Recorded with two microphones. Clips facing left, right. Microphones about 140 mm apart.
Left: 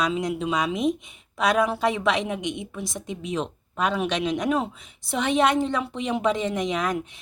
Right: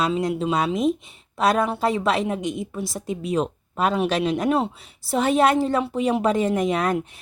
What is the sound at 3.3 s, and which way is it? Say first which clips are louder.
A woman's voice: right 4 dB; 40° right (ahead or behind).